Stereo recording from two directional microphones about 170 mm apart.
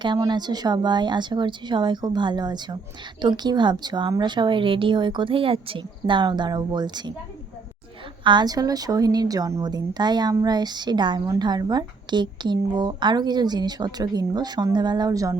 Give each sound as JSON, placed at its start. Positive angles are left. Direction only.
{"t": 0.0, "sound": "a woman's voice", "side_deg": -25}
{"t": 8.2, "sound": "a woman's voice", "side_deg": -25}